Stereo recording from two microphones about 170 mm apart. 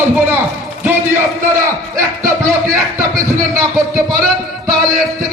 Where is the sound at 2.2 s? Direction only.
50° right (ahead or behind).